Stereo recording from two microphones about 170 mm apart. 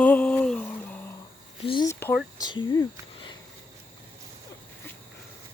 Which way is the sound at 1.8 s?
15° left (ahead or behind).